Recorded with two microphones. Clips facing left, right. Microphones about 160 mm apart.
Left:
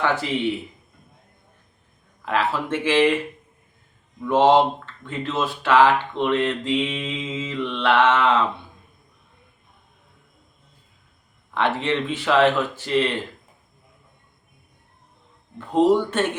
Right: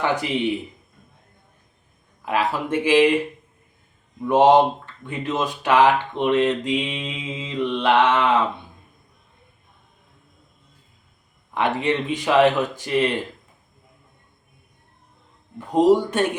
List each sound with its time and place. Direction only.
0.0 s speech: 15° right (ahead or behind)
2.2 s speech: 15° right (ahead or behind)
4.2 s speech: 15° right (ahead or behind)
11.5 s speech: 15° right (ahead or behind)
15.5 s speech: 15° right (ahead or behind)